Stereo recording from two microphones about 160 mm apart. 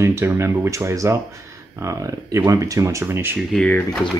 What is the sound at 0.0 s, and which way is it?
Speech, 15° right (ahead or behind).